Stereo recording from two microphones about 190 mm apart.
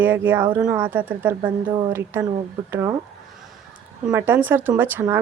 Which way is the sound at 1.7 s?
25° right (ahead or behind).